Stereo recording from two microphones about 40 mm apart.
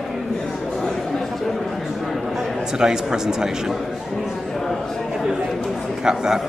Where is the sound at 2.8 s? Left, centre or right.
Centre.